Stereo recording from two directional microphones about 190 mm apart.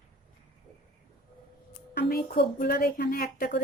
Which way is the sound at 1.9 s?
60° left (ahead or behind).